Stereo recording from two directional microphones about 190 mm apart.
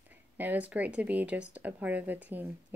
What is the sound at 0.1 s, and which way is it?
Speech, 10° right (ahead or behind).